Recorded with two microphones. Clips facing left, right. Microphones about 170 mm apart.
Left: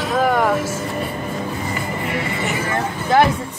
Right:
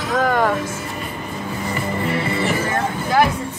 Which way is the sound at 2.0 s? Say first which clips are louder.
Right 3 dB; 30° right (ahead or behind).